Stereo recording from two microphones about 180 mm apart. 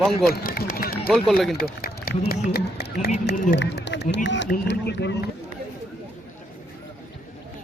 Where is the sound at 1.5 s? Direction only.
55° left (ahead or behind).